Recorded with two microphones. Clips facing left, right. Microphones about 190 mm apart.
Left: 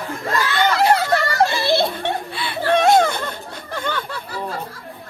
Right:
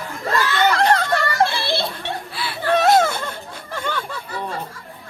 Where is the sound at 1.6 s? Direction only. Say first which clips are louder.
Left 6 dB; 50° left (ahead or behind).